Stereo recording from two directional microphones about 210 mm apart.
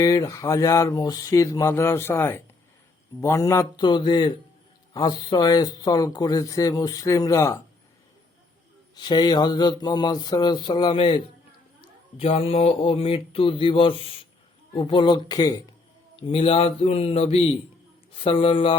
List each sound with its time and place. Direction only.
0.0 s speech: 15° left (ahead or behind)
9.0 s speech: 20° left (ahead or behind)